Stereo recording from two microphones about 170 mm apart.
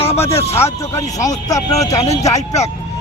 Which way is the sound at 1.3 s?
20° left (ahead or behind).